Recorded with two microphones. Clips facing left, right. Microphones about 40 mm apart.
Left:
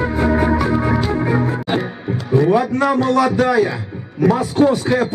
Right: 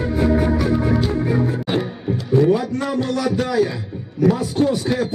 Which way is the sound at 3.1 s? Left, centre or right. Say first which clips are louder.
Left 5 dB; left.